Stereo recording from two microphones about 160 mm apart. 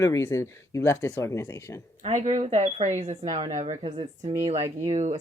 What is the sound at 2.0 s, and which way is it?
Speech, 45° right (ahead or behind).